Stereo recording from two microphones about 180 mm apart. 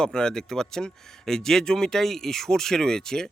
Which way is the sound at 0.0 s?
5° left (ahead or behind).